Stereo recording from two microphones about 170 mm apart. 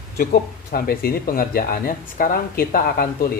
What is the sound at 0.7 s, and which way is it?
Speech, 60° left (ahead or behind).